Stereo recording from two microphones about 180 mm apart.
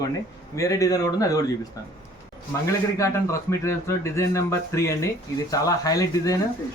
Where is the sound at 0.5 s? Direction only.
15° left (ahead or behind).